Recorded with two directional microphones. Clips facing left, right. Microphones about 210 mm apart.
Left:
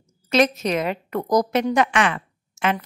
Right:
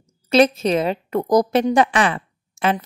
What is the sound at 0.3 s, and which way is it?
A woman's voice, 30° right (ahead or behind).